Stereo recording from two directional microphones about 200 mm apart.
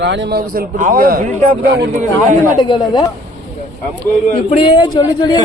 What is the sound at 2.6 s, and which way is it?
Speech, 20° left (ahead or behind).